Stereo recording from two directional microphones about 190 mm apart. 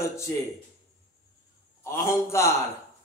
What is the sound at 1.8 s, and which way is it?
Speech, 15° left (ahead or behind).